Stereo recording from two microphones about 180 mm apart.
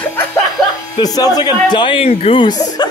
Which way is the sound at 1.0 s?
20° left (ahead or behind).